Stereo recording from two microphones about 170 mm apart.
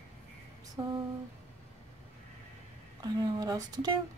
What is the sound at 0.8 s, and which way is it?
Speech, 20° right (ahead or behind).